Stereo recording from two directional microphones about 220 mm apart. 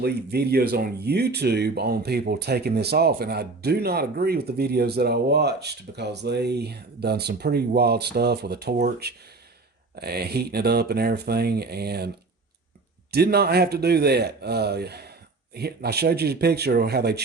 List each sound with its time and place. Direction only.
0.0 s speech: 45° right (ahead or behind)